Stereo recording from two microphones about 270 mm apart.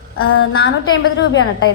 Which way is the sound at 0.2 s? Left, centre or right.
Left.